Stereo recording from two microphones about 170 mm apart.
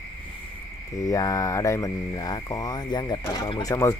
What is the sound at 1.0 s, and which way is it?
Speech, 20° left (ahead or behind).